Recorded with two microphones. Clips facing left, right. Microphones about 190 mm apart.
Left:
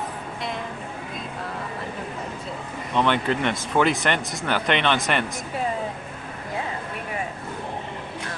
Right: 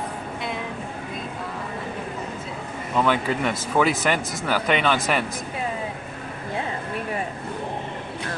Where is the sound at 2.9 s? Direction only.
5° right (ahead or behind).